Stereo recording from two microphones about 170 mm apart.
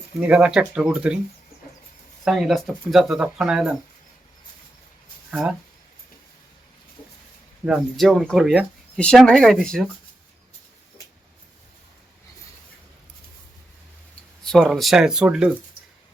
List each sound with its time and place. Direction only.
0.2 s speech: 5° right (ahead or behind)
2.2 s speech: centre (ahead or behind)
5.3 s speech: 5° right (ahead or behind)
7.6 s speech: centre (ahead or behind)
14.4 s speech: centre (ahead or behind)